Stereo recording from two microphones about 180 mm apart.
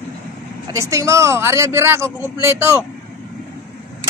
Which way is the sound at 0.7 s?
15° right (ahead or behind).